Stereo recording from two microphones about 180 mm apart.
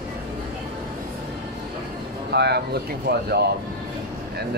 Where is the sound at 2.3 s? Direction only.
65° right (ahead or behind).